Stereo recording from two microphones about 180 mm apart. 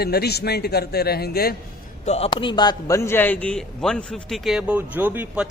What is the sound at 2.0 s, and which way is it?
Speech, 35° left (ahead or behind).